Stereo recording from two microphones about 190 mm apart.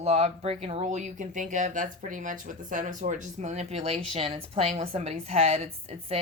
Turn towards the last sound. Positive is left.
turn(degrees=-35)  # may be behind; listen again after turning